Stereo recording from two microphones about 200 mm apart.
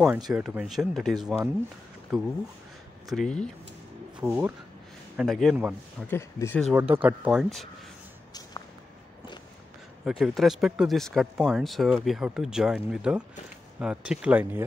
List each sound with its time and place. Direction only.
0.0 s speech: 5° right (ahead or behind)
3.1 s speech: 5° left (ahead or behind)
4.2 s speech: 10° right (ahead or behind)
5.1 s speech: centre (ahead or behind)
6.0 s speech: 10° left (ahead or behind)
6.7 s speech: 10° right (ahead or behind)
8.3 s a sound: 20° left (ahead or behind)
10.0 s speech: centre (ahead or behind)